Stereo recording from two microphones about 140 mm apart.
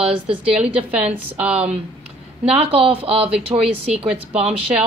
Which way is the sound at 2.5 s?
45° right (ahead or behind).